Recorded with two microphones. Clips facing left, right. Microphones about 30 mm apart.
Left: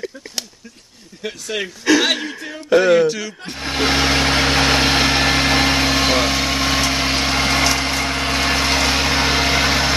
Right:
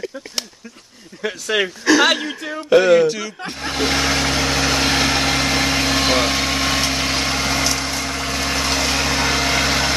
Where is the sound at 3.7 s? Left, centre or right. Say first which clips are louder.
Left 2 dB; centre.